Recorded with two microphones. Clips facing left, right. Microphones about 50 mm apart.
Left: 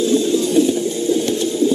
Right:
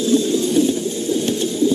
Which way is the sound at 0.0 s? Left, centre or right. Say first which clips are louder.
Left 1 dB; centre.